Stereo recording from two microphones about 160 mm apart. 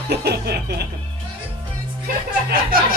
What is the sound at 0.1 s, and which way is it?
Music, 90° right.